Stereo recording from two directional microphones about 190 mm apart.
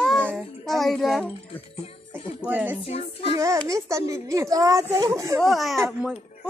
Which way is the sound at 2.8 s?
35° left (ahead or behind).